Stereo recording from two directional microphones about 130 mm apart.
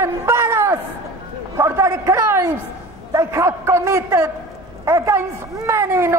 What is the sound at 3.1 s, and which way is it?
A man's voice, 20° right (ahead or behind).